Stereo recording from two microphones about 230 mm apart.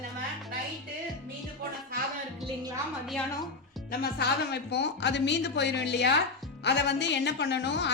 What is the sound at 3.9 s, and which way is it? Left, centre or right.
A woman's voice, left.